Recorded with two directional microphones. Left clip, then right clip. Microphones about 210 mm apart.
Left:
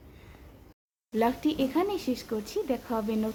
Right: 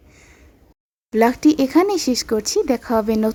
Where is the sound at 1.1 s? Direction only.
50° right (ahead or behind).